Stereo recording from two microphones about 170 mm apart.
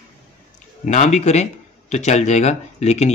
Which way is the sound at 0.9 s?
45° left (ahead or behind).